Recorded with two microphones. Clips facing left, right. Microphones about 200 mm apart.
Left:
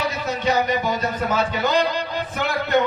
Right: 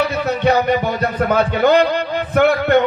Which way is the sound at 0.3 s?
60° right (ahead or behind).